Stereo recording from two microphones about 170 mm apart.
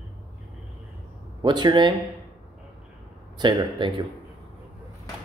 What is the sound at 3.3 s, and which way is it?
Speech, 25° right (ahead or behind).